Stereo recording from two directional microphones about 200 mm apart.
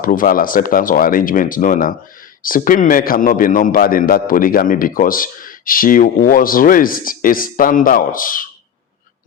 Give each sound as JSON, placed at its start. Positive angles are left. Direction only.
{"t": 0.0, "sound": "a man's voice", "side_deg": 45}